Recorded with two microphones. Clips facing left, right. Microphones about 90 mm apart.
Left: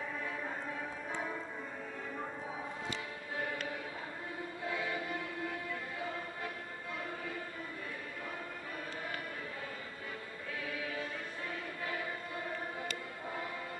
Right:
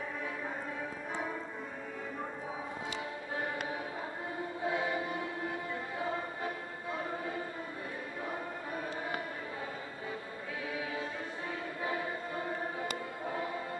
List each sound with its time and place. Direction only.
1.1 s music: 5° right (ahead or behind)
4.6 s music: 25° right (ahead or behind)